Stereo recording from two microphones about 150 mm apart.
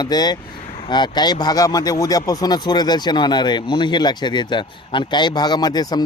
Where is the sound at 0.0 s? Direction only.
25° left (ahead or behind).